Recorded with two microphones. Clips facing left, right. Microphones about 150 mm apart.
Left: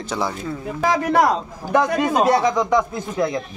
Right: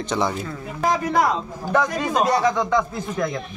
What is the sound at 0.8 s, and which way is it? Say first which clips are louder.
Speech: left 2 dB; 75° left (ahead or behind).